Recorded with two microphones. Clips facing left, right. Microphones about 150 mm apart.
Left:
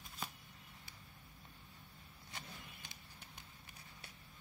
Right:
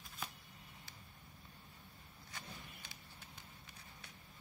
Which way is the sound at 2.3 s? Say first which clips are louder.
Even; 20° left (ahead or behind).